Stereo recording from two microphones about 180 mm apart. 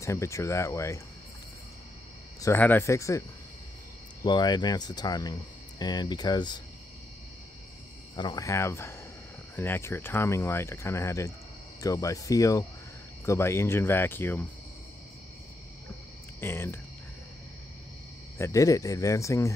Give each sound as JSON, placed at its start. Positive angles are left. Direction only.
{"t": 0.0, "sound": "speech", "side_deg": 15}
{"t": 2.4, "sound": "speech", "side_deg": 10}
{"t": 8.2, "sound": "speech", "side_deg": 20}
{"t": 16.3, "sound": "speech", "side_deg": 15}
{"t": 18.4, "sound": "speech", "side_deg": 15}